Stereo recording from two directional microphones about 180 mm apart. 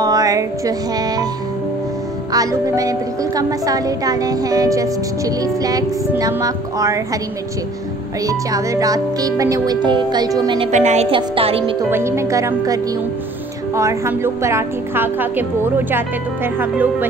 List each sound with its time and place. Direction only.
0.0 s music: 20° right (ahead or behind)
2.3 s speech: 20° right (ahead or behind)
8.3 s speech: 20° right (ahead or behind)
10.7 s speech: 40° right (ahead or behind)
11.1 s speech: 30° right (ahead or behind)
11.9 s a woman's voice: 15° right (ahead or behind)